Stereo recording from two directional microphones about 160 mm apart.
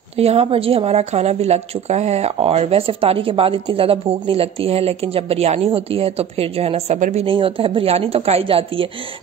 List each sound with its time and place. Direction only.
0.2 s speech: 40° right (ahead or behind)
7.2 s speech: 35° right (ahead or behind)